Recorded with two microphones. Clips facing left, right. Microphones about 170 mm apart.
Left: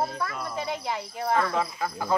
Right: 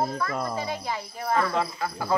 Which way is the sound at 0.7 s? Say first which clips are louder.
Even; 20° left (ahead or behind).